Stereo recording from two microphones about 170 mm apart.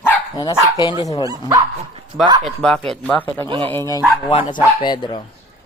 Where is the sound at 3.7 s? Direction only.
15° left (ahead or behind).